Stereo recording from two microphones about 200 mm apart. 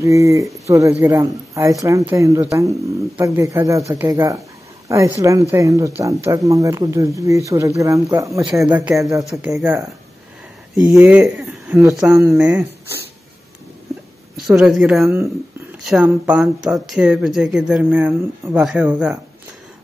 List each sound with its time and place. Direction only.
0.0 s speech: 15° right (ahead or behind)
10.9 s speech: 5° right (ahead or behind)
14.5 s speech: centre (ahead or behind)